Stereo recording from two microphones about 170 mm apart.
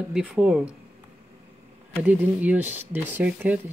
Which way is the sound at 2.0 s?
10° right (ahead or behind).